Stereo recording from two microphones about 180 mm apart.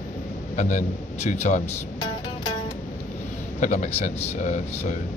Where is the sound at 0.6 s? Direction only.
40° left (ahead or behind).